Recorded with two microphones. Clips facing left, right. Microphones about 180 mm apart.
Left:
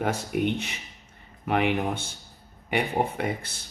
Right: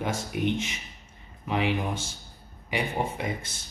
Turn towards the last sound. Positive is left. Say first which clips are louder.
# left 3 dB
turn(degrees=60)  # may be behind; listen again after turning